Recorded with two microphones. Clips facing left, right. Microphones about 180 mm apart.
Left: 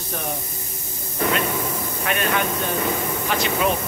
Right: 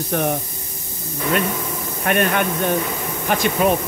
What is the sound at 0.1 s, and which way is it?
Speech, 65° right (ahead or behind).